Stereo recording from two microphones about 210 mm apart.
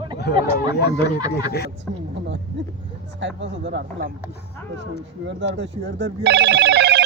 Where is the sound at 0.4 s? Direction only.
15° right (ahead or behind).